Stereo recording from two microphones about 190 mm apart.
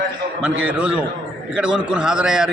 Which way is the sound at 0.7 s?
5° right (ahead or behind).